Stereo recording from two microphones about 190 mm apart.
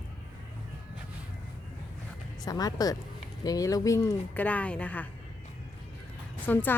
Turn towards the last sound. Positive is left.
turn(degrees=10)  # may be behind; listen again after turning